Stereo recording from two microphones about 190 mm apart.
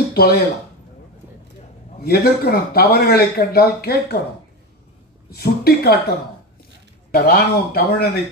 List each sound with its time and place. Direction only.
0.1 s speech: 55° left (ahead or behind)
2.0 s speech: 55° left (ahead or behind)
5.3 s speech: 55° left (ahead or behind)